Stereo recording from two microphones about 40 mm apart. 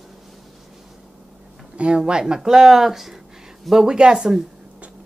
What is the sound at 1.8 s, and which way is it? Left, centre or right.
A woman's voice, right.